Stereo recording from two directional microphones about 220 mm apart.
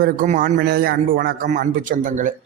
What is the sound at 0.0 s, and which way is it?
Speech, 40° right (ahead or behind).